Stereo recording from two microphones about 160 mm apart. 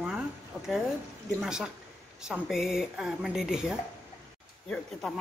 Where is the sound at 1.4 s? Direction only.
5° right (ahead or behind).